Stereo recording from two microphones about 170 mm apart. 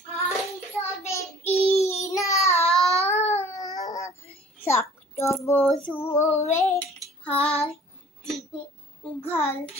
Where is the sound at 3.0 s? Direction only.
40° left (ahead or behind).